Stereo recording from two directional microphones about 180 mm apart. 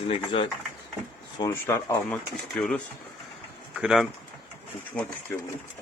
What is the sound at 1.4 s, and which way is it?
Speech, 15° left (ahead or behind).